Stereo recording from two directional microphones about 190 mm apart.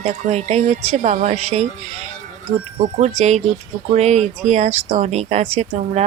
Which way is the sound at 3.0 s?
35° right (ahead or behind).